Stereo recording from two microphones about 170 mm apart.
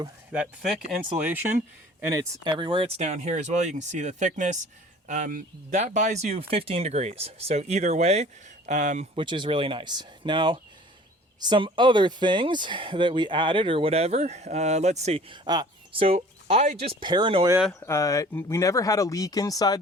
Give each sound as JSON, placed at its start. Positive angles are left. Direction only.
{"t": 1.2, "sound": "speech", "side_deg": -10}
{"t": 2.5, "sound": "speech", "side_deg": -30}
{"t": 9.1, "sound": "speech", "side_deg": -30}
{"t": 15.4, "sound": "speech", "side_deg": -25}
{"t": 17.7, "sound": "speech", "side_deg": 20}